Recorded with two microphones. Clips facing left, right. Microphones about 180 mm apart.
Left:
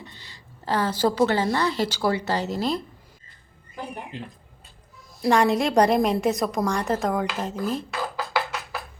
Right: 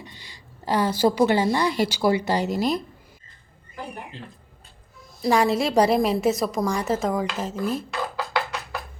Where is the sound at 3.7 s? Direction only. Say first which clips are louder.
Left 2 dB; 15° left (ahead or behind).